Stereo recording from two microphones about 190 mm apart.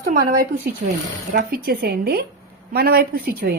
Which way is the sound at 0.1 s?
50° right (ahead or behind).